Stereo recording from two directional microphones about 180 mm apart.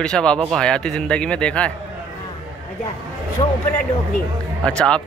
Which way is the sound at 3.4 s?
30° left (ahead or behind).